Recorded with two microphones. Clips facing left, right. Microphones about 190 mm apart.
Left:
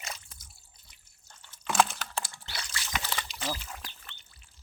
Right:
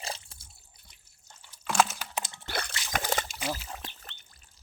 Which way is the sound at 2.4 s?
55° right (ahead or behind).